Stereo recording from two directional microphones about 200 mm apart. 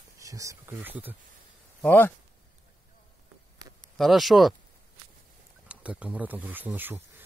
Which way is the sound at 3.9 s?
Centre (ahead or behind).